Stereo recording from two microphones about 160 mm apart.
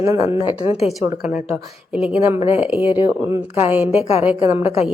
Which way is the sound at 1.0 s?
10° right (ahead or behind).